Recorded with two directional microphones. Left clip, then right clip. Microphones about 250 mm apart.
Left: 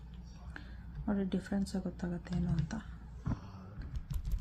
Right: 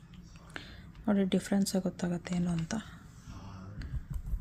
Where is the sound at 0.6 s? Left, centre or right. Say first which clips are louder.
Right 6 dB; right.